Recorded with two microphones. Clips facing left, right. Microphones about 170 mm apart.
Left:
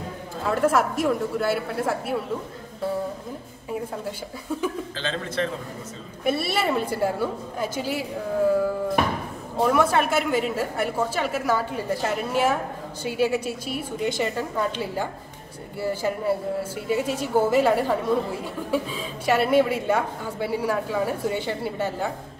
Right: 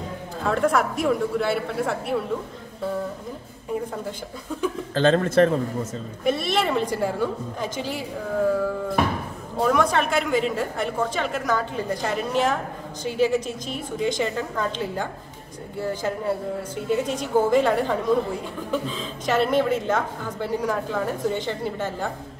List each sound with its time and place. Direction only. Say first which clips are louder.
0.5 s a man's voice: even; 5° left (ahead or behind)
4.9 s speech: right 10 dB; 50° right (ahead or behind)
6.2 s a woman's voice: right 1 dB; 5° left (ahead or behind)
9.6 s a man's voice: even; 5° left (ahead or behind)